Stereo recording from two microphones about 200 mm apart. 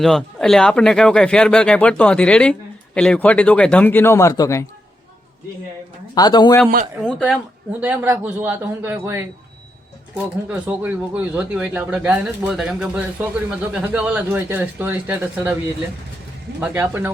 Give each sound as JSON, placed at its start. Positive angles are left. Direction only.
{"t": 0.0, "sound": "speech", "side_deg": 0}
{"t": 6.1, "sound": "a man's voice", "side_deg": 20}
{"t": 7.0, "sound": "speech", "side_deg": -5}
{"t": 10.5, "sound": "speech", "side_deg": -10}
{"t": 16.6, "sound": "speech", "side_deg": -10}